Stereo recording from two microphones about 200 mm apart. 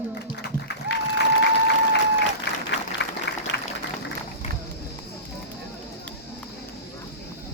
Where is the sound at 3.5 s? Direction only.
35° right (ahead or behind).